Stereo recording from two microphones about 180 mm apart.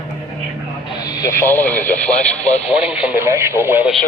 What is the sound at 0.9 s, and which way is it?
Speech, 20° left (ahead or behind).